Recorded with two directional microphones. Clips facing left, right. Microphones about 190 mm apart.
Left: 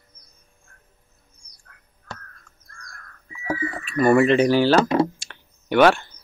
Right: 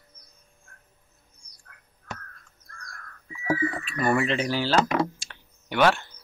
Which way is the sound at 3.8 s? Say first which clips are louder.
Left 13 dB; 50° left (ahead or behind).